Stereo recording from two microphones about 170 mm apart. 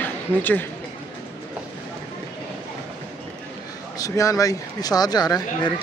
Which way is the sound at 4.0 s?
20° left (ahead or behind).